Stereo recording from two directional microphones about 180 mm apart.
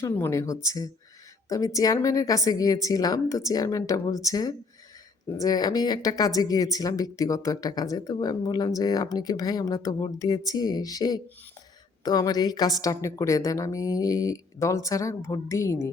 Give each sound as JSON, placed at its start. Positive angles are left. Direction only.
{"t": 0.0, "sound": "a woman's voice", "side_deg": 15}